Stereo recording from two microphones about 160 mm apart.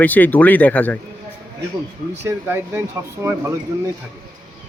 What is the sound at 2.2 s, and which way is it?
Speech, 15° right (ahead or behind).